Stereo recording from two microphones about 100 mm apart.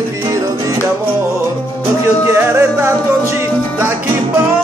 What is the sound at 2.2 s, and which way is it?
Music, 25° right (ahead or behind).